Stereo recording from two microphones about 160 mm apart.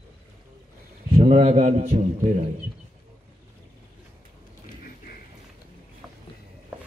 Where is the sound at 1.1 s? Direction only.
40° right (ahead or behind).